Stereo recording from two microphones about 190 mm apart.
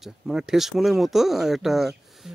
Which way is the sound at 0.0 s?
5° right (ahead or behind).